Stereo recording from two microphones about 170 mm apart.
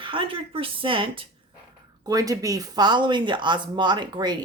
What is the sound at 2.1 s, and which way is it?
Speech, 20° right (ahead or behind).